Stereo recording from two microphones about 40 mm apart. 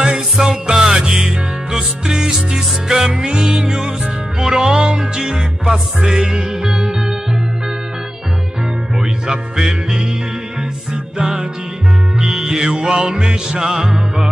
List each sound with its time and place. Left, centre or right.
0.0 s music: centre
8.9 s music: centre
12.2 s music: centre